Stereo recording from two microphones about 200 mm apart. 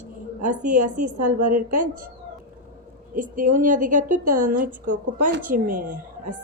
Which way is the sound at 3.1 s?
40° right (ahead or behind).